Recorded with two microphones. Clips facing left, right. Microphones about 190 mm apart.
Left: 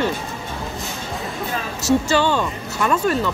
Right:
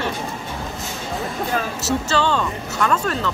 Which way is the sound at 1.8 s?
10° left (ahead or behind).